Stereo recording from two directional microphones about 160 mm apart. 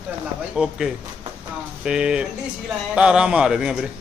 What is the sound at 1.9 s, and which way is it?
Speech, 5° right (ahead or behind).